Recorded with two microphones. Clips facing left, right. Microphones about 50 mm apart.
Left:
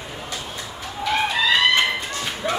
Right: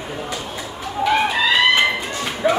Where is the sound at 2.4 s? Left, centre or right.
Right.